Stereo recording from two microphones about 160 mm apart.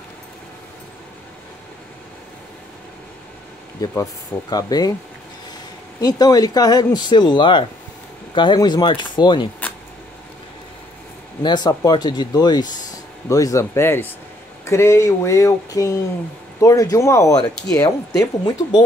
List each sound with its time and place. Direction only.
3.8 s speech: 20° left (ahead or behind)
5.9 s speech: 25° left (ahead or behind)
11.4 s speech: 25° left (ahead or behind)